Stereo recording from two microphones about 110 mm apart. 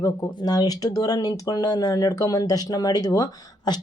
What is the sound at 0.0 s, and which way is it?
A woman's voice, 35° left (ahead or behind).